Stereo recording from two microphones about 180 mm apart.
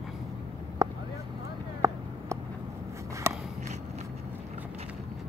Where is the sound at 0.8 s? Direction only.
15° right (ahead or behind).